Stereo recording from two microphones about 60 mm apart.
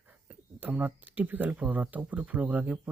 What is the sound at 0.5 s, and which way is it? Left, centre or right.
Speech, right.